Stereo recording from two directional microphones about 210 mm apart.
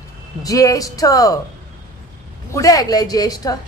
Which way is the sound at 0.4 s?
15° left (ahead or behind).